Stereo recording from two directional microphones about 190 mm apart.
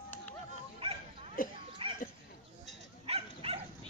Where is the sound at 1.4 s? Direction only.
50° left (ahead or behind).